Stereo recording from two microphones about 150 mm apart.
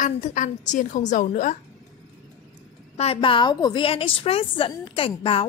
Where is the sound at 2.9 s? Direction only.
40° left (ahead or behind).